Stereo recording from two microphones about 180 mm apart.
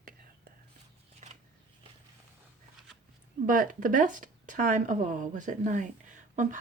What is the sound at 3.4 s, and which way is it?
Speech, 50° right (ahead or behind).